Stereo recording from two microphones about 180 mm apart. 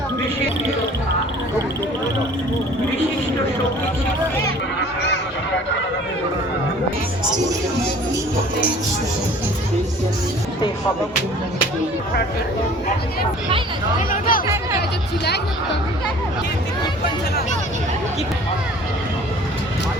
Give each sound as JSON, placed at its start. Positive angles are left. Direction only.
{"t": 4.8, "sound": "honk", "side_deg": 70}
{"t": 14.1, "sound": "speech", "side_deg": 50}
{"t": 14.4, "sound": "music", "side_deg": -15}
{"t": 14.8, "sound": "music", "side_deg": 65}